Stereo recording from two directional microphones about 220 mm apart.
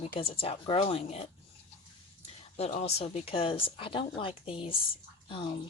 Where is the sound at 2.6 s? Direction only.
30° left (ahead or behind).